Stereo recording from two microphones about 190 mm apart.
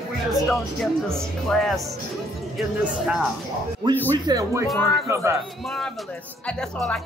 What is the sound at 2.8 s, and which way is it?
Speech, 5° right (ahead or behind).